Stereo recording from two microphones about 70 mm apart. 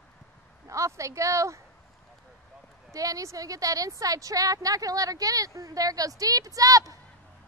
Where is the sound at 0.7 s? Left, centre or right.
Right.